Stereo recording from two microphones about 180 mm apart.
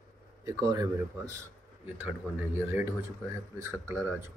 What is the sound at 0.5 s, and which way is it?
Speech, 20° right (ahead or behind).